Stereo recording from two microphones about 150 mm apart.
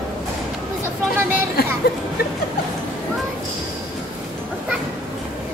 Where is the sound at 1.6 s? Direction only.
90° left.